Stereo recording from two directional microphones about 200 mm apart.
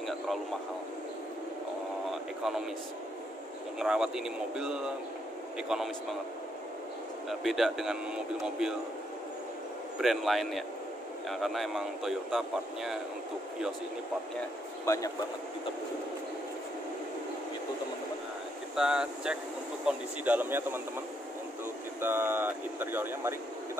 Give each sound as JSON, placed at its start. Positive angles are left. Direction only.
{"t": 0.0, "sound": "radio", "side_deg": 0}
{"t": 2.0, "sound": "radio", "side_deg": 0}
{"t": 3.8, "sound": "speech", "side_deg": -5}
{"t": 7.2, "sound": "speech", "side_deg": 0}
{"t": 9.9, "sound": "speech", "side_deg": 0}
{"t": 14.9, "sound": "a man's voice", "side_deg": 15}
{"t": 18.8, "sound": "speech", "side_deg": -5}
{"t": 22.0, "sound": "speech", "side_deg": -10}